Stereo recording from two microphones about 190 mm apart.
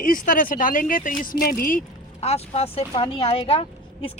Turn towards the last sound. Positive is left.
turn(degrees=30)  # may be behind; listen again after turning